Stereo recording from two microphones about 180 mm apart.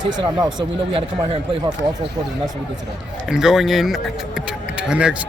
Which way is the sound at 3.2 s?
5° right (ahead or behind).